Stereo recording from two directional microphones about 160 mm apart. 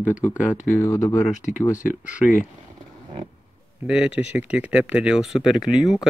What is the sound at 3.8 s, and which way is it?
Speech, 5° right (ahead or behind).